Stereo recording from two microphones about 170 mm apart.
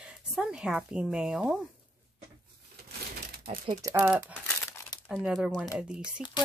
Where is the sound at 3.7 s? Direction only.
20° right (ahead or behind).